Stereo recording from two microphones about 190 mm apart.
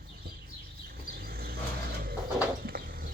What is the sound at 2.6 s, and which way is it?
Bird, 50° right (ahead or behind).